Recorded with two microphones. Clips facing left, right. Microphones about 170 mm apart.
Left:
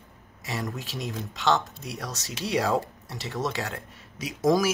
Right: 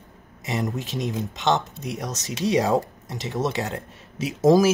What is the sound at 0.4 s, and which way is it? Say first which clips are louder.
Speech: right 6 dB; 20° right (ahead or behind).